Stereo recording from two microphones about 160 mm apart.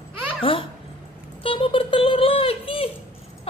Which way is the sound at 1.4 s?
35° left (ahead or behind).